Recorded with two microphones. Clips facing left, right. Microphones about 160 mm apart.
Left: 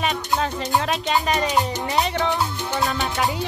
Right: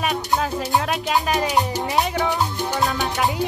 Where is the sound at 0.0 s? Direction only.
5° right (ahead or behind).